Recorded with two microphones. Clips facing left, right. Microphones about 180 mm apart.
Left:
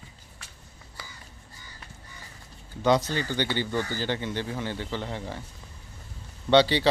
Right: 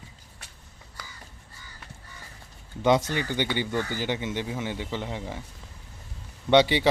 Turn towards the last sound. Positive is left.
turn(degrees=-20)  # may be behind; listen again after turning